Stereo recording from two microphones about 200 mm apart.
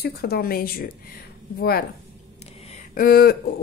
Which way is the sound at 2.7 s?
45° left (ahead or behind).